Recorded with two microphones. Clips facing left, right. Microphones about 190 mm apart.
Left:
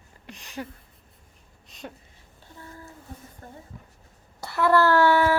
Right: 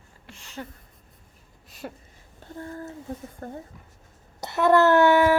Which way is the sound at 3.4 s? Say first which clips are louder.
Right 10 dB; 55° right (ahead or behind).